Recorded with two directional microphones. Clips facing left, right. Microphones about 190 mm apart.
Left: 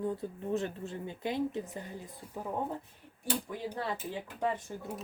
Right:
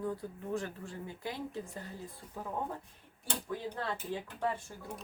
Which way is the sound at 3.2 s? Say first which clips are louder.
Left 3 dB; 15° left (ahead or behind).